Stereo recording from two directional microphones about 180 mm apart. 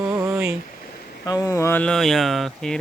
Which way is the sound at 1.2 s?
20° left (ahead or behind).